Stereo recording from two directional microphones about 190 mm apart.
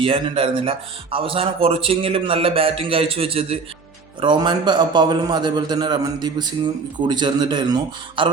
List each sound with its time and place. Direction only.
0.0 s a man's voice: 30° right (ahead or behind)